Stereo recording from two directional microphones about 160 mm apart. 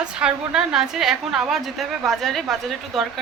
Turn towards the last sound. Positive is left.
turn(degrees=0)  # may be behind; listen again after turning